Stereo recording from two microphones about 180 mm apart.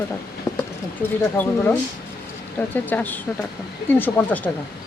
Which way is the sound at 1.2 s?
10° left (ahead or behind).